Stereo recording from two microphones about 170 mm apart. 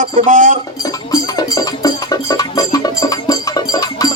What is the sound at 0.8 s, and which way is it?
Music, 20° left (ahead or behind).